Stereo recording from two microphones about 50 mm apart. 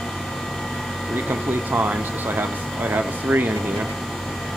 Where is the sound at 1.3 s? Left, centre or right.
Right.